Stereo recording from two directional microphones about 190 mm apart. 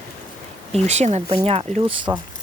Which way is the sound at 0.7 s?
35° right (ahead or behind).